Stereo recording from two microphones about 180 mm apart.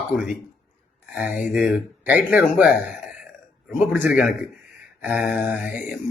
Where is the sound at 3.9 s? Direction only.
10° right (ahead or behind).